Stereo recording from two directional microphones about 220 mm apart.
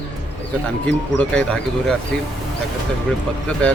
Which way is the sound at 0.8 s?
5° left (ahead or behind).